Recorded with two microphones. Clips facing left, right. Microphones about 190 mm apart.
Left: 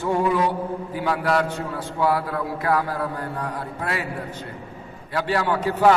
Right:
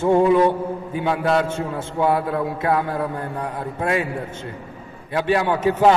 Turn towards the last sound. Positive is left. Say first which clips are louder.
# right 2 dB
turn(degrees=-20)  # may be behind; listen again after turning